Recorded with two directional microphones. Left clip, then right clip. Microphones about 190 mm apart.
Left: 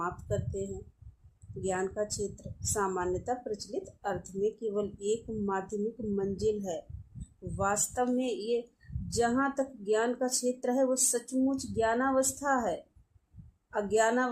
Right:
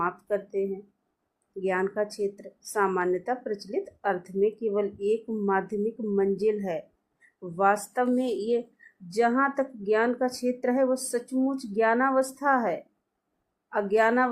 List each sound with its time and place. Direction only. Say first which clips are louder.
0.0 s speech: right 6 dB; 25° right (ahead or behind)
1.6 s a woman's voice: right 5 dB; 30° right (ahead or behind)
13.9 s a woman's voice: right 5 dB; 25° right (ahead or behind)